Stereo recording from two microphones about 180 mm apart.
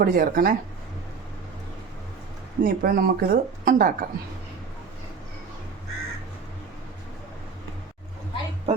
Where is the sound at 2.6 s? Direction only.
50° right (ahead or behind).